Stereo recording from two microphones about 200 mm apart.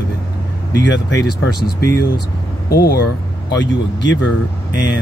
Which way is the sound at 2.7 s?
50° left (ahead or behind).